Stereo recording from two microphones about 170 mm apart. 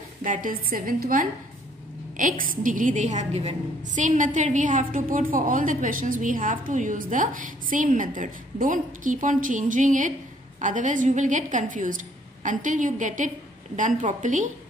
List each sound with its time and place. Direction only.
0.2 s a woman's voice: 50° right (ahead or behind)